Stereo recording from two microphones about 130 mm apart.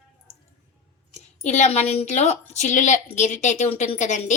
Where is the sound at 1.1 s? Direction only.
60° left (ahead or behind).